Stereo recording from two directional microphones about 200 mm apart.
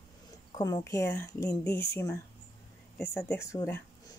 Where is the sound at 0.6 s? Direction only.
20° left (ahead or behind).